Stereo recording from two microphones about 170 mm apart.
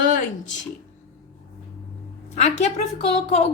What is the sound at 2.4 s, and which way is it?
A woman's voice, 40° left (ahead or behind).